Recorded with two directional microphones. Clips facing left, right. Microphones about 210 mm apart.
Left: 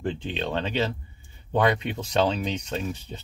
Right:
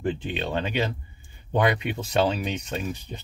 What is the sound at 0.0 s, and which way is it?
Speech, 5° right (ahead or behind).